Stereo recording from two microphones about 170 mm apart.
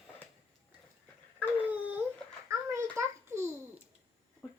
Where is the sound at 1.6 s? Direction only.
10° right (ahead or behind).